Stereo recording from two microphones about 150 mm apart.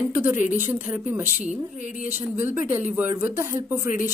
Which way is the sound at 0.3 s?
15° right (ahead or behind).